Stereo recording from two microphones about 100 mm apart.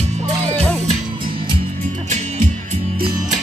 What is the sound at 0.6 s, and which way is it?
Music, 10° left (ahead or behind).